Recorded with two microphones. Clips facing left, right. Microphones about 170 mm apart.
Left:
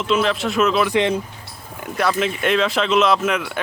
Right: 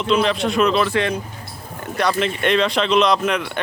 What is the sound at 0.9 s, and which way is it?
Speech, 20° left (ahead or behind).